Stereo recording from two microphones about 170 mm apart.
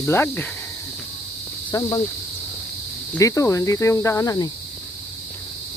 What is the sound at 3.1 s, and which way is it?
Speech, 15° left (ahead or behind).